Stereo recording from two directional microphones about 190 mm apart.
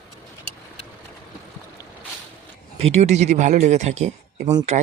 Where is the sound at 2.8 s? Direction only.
35° right (ahead or behind).